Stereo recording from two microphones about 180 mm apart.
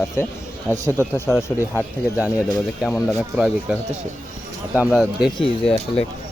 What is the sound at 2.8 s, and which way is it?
Speech, 5° right (ahead or behind).